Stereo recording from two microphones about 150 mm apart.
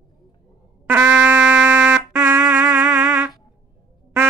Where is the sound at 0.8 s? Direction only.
10° right (ahead or behind).